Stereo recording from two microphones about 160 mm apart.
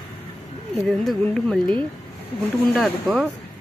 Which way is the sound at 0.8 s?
5° left (ahead or behind).